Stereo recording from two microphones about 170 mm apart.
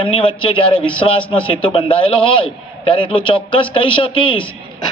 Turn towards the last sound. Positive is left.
turn(degrees=30)  # may be behind; listen again after turning